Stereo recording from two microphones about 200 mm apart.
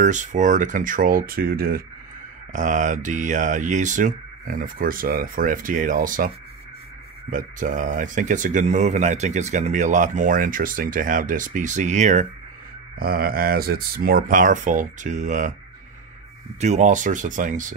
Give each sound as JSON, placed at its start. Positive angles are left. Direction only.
{"t": 0.0, "sound": "speech", "side_deg": -40}
{"t": 13.0, "sound": "speech", "side_deg": -45}
{"t": 16.5, "sound": "speech", "side_deg": -35}